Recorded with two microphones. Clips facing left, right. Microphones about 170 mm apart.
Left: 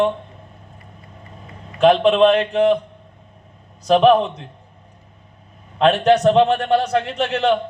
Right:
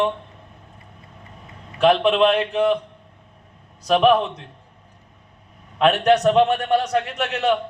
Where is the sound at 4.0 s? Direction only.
15° left (ahead or behind).